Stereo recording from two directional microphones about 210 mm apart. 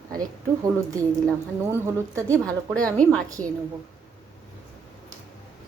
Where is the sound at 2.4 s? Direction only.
5° left (ahead or behind).